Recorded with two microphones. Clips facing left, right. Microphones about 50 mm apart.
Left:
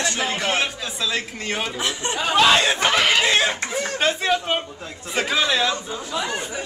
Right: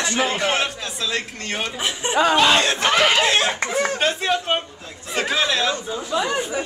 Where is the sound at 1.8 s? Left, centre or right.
Centre.